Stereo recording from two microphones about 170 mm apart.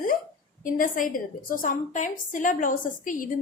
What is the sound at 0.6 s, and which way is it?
A woman's voice, 50° left (ahead or behind).